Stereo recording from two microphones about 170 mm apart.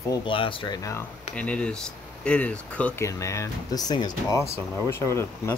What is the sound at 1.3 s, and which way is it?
Speech, 5° left (ahead or behind).